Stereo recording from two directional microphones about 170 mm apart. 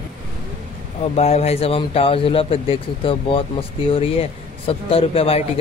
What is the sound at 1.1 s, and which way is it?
A man's voice, 40° left (ahead or behind).